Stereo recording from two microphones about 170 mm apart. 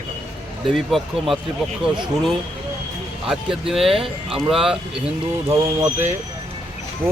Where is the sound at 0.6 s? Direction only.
Centre (ahead or behind).